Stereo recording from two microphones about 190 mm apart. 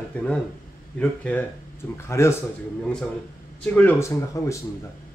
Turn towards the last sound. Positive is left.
turn(degrees=15)  # may be behind; listen again after turning